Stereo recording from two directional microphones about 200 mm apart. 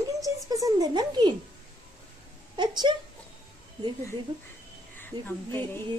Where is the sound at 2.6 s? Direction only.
20° right (ahead or behind).